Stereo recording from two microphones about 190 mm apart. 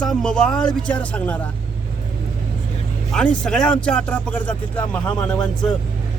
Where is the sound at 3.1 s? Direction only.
5° left (ahead or behind).